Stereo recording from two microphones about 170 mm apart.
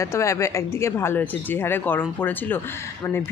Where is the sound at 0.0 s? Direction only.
15° left (ahead or behind).